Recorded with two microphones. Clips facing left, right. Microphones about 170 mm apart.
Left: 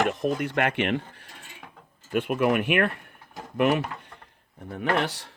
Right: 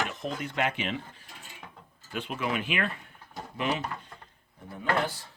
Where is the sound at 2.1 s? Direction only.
55° left (ahead or behind).